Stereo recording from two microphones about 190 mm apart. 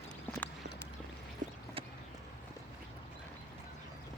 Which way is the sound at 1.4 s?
40° right (ahead or behind).